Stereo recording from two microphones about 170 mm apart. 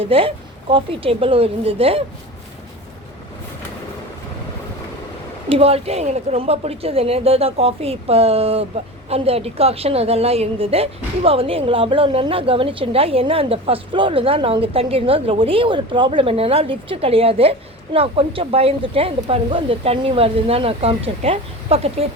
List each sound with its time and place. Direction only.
0.1 s a woman's voice: 35° right (ahead or behind)
5.5 s a woman's voice: 35° right (ahead or behind)